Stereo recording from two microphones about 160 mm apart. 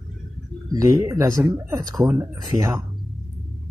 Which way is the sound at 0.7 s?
20° right (ahead or behind).